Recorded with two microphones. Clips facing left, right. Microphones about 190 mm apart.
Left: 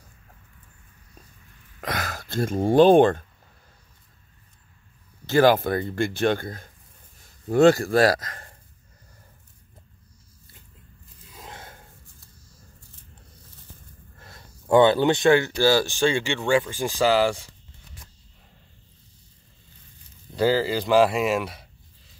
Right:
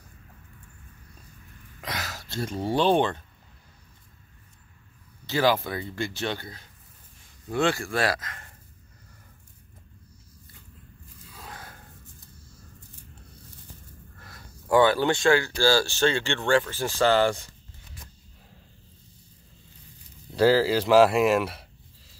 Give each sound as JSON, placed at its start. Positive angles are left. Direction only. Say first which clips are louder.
{"t": 1.8, "sound": "speech", "louder": "left 5 dB", "side_deg": 55}
{"t": 5.2, "sound": "speech", "louder": "left 6 dB", "side_deg": 50}
{"t": 11.3, "sound": "a sound", "louder": "left 1 dB", "side_deg": 25}
{"t": 14.1, "sound": "speech", "louder": "left 3 dB", "side_deg": 25}
{"t": 20.3, "sound": "speech", "louder": "right 2 dB", "side_deg": 0}